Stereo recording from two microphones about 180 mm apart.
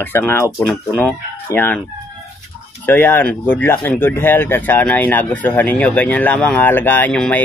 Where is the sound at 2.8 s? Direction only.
10° left (ahead or behind).